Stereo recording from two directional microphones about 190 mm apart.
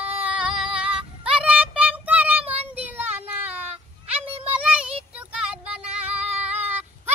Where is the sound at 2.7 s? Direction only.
10° right (ahead or behind).